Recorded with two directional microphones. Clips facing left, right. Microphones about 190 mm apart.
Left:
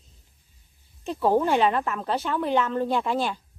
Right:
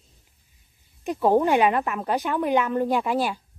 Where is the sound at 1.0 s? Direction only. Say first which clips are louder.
Right 2 dB; 15° right (ahead or behind).